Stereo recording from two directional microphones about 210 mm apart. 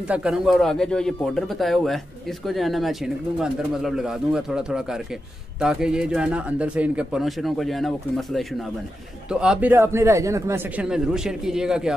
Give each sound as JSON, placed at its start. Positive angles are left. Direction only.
{"t": 0.1, "sound": "speech", "side_deg": -5}